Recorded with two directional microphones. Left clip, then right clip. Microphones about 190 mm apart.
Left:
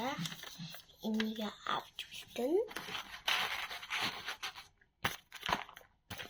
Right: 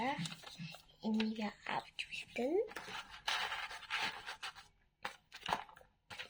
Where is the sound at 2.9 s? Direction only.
10° left (ahead or behind).